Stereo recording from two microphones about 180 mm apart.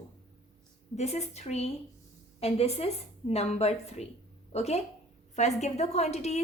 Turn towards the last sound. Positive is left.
turn(degrees=35)  # may be behind; listen again after turning